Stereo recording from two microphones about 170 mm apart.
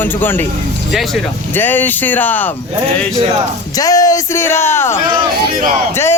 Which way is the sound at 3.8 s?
20° left (ahead or behind).